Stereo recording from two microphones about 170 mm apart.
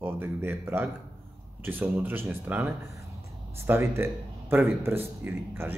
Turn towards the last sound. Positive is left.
turn(degrees=-15)  # may be behind; listen again after turning